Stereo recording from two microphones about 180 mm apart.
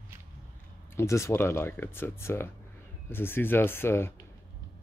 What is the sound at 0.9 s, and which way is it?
Speech, 15° left (ahead or behind).